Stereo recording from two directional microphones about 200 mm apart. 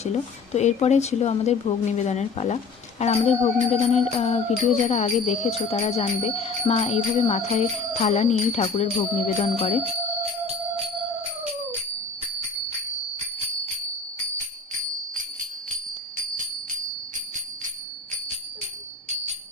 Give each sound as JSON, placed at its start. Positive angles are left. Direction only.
{"t": 0.0, "sound": "music", "side_deg": 35}